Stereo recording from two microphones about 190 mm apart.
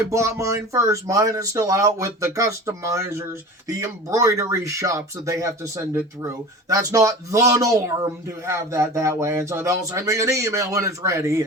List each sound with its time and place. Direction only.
0.1 s speech: 15° right (ahead or behind)